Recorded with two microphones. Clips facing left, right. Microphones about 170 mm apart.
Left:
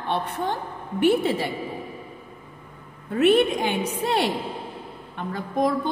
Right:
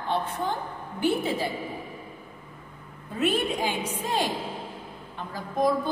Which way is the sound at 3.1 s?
65° left (ahead or behind).